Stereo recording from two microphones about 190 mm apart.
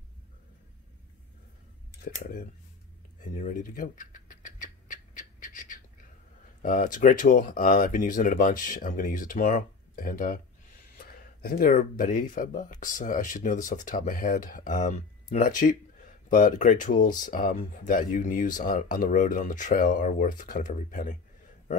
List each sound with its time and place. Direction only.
2.0 s speech: 50° left (ahead or behind)
3.2 s rodents: 40° left (ahead or behind)
6.6 s speech: 45° left (ahead or behind)